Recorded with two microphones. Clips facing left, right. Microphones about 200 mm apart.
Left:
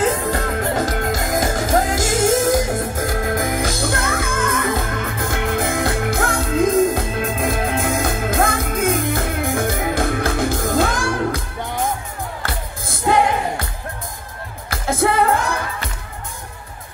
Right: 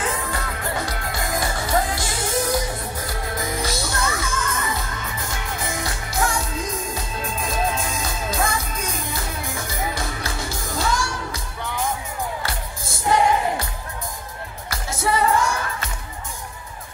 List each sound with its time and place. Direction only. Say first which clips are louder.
0.1 s music: left 7 dB; 45° left (ahead or behind)
14.7 s music: left 5 dB; 55° left (ahead or behind)